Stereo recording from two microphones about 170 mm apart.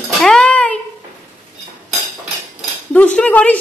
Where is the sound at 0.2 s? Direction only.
5° left (ahead or behind).